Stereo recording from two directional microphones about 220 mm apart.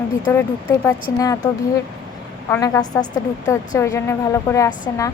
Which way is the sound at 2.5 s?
15° left (ahead or behind).